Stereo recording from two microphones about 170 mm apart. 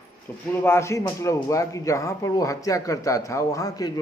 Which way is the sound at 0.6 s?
15° left (ahead or behind).